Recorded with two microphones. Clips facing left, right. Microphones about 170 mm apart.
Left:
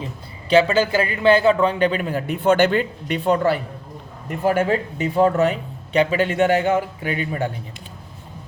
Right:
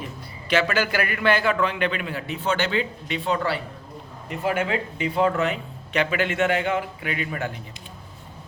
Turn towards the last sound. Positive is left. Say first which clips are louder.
# left 5 dB
turn(degrees=30)  # may be behind; listen again after turning